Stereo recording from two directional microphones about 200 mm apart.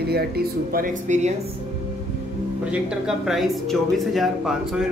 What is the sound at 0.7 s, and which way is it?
Speech, 40° right (ahead or behind).